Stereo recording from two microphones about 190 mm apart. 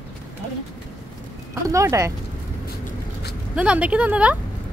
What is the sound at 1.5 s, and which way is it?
Speech, 15° right (ahead or behind).